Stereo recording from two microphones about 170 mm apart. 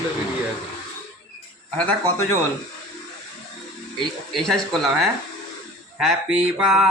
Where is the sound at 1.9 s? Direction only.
10° left (ahead or behind).